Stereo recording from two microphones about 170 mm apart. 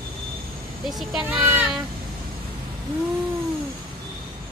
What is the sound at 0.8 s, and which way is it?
Speech, centre (ahead or behind).